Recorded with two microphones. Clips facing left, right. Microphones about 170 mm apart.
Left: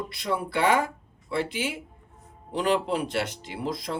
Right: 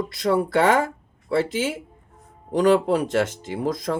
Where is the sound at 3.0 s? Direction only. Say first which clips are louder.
Right 7 dB; 45° right (ahead or behind).